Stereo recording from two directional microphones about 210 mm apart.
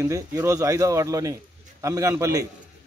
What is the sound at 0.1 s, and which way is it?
A man's voice, 15° right (ahead or behind).